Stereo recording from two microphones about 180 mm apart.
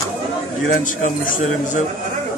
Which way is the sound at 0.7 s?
45° left (ahead or behind).